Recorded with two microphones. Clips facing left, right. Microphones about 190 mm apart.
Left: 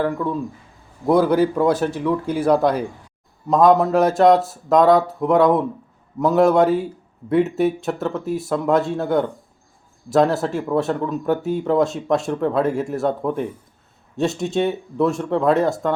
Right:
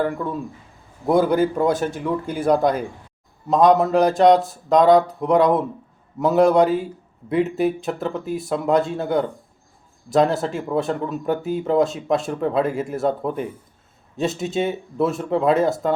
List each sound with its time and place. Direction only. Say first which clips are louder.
0.0 s speech: left 2 dB; centre (ahead or behind)